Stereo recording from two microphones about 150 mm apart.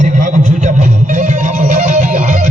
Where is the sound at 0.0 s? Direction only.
55° right (ahead or behind).